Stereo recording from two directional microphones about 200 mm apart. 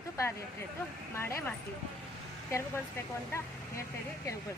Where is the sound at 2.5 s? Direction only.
10° left (ahead or behind).